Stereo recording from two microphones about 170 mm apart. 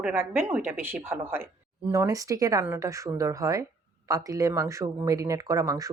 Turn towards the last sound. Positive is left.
turn(degrees=-20)  # may be behind; listen again after turning